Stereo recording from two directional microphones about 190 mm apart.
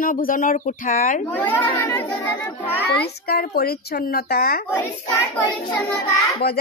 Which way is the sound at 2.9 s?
60° left (ahead or behind).